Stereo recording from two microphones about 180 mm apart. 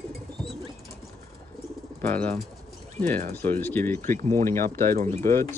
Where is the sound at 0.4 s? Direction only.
Centre (ahead or behind).